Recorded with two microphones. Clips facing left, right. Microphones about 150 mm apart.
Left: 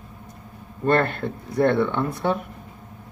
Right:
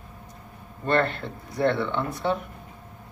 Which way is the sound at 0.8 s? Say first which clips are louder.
Left 3 dB; 55° left (ahead or behind).